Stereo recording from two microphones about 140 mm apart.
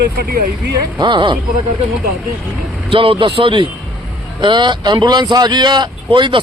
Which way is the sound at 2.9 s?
40° right (ahead or behind).